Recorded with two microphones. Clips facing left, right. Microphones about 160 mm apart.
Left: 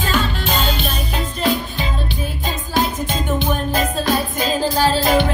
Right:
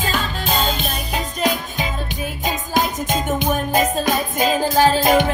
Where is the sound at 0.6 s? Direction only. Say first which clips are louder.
Even; 45° right (ahead or behind).